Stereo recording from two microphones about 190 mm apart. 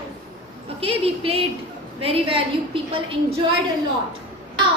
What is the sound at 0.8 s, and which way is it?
A woman's voice, 30° right (ahead or behind).